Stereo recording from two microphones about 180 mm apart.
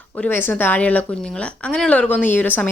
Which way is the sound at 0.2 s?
10° left (ahead or behind).